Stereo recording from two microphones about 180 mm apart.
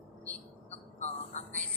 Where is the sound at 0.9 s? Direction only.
40° left (ahead or behind).